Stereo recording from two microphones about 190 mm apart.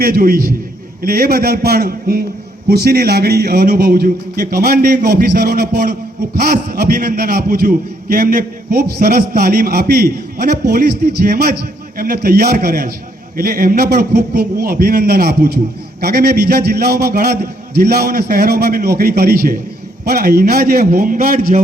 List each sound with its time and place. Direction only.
0.0 s a man's voice: 50° right (ahead or behind)